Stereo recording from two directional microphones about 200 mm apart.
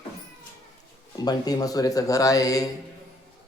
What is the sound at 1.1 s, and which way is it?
A man's voice, 20° left (ahead or behind).